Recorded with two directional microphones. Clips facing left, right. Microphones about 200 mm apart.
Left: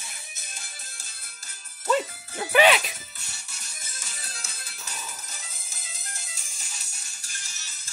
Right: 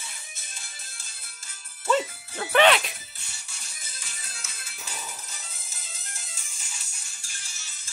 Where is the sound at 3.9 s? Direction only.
40° left (ahead or behind).